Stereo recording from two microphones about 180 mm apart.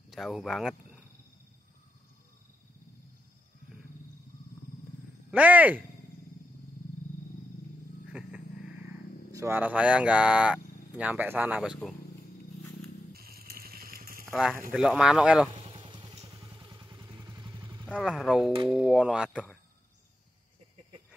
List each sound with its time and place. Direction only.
0.1 s speech: centre (ahead or behind)
5.3 s speech: 10° right (ahead or behind)
8.1 s a sound: 5° right (ahead or behind)
9.3 s speech: 15° right (ahead or behind)
13.1 s a sound: 55° right (ahead or behind)
14.3 s speech: centre (ahead or behind)
15.5 s vehicle: 30° right (ahead or behind)
16.3 s motorcycle: 25° right (ahead or behind)
17.8 s speech: 5° left (ahead or behind)